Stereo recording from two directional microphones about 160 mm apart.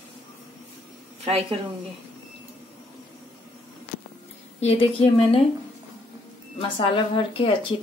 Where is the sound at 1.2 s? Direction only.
40° right (ahead or behind).